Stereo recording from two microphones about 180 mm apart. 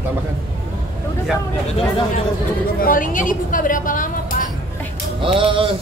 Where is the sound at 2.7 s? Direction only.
50° left (ahead or behind).